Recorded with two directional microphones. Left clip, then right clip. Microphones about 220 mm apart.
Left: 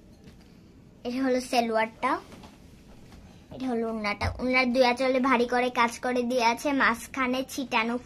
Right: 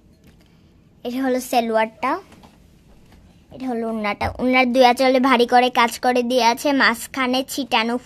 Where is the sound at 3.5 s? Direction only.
45° right (ahead or behind).